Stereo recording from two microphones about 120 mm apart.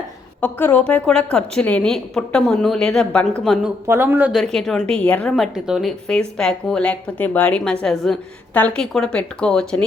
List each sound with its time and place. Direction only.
0.4 s a woman's voice: 10° left (ahead or behind)
3.8 s speech: 20° right (ahead or behind)
4.3 s a woman's voice: centre (ahead or behind)
5.4 s a woman's voice: 5° right (ahead or behind)
6.1 s a woman's voice: 5° left (ahead or behind)